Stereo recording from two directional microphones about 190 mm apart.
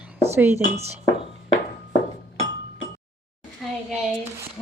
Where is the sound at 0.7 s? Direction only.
35° right (ahead or behind).